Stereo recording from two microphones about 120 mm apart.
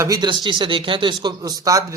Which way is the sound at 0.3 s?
45° right (ahead or behind).